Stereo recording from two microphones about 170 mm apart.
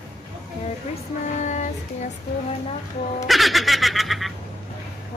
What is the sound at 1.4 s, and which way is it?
Child singing, 45° left (ahead or behind).